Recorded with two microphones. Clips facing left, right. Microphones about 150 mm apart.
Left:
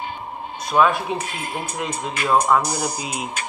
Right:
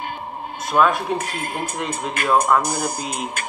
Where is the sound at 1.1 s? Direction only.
50° right (ahead or behind).